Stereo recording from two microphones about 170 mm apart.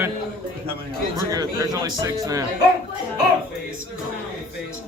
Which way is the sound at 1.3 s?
20° right (ahead or behind).